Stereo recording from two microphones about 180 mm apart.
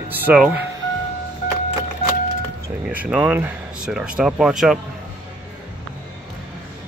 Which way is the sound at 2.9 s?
10° right (ahead or behind).